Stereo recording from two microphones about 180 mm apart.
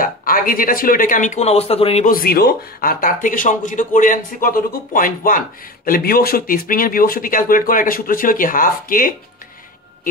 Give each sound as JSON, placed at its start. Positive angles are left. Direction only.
{"t": 0.0, "sound": "speech", "side_deg": 50}
{"t": 2.0, "sound": "speech", "side_deg": 55}